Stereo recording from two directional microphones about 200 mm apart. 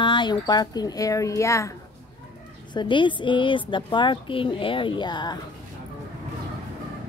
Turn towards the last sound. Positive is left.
turn(degrees=20)  # may be behind; listen again after turning